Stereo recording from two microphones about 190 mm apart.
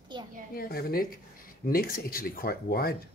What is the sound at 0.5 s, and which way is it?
Speech, 50° left (ahead or behind).